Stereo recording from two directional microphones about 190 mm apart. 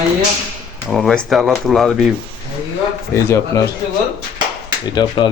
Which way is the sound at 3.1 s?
15° left (ahead or behind).